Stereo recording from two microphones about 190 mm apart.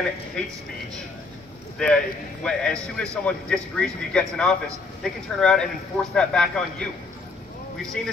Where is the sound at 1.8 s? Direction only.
5° left (ahead or behind).